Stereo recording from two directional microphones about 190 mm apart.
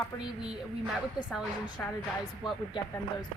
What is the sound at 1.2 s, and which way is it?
Speech, centre (ahead or behind).